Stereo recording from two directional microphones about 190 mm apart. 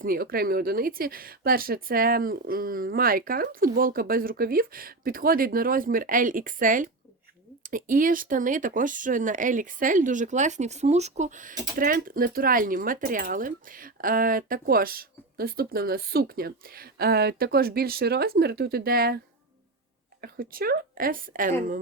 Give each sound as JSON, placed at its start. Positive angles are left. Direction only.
{"t": 0.0, "sound": "speech", "side_deg": -50}
{"t": 20.2, "sound": "speech", "side_deg": -50}